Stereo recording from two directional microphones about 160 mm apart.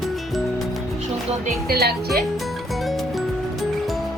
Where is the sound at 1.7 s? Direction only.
80° right.